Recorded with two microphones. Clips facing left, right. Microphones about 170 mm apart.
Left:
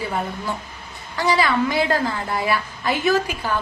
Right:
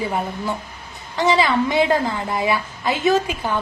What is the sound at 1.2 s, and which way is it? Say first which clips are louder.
A woman's voice: right 2 dB; 20° right (ahead or behind).